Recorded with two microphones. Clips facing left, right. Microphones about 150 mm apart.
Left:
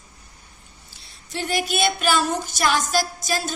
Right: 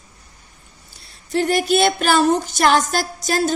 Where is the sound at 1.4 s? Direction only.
50° right (ahead or behind).